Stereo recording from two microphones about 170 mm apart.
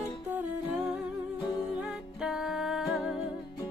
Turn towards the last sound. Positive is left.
turn(degrees=-5)  # may be behind; listen again after turning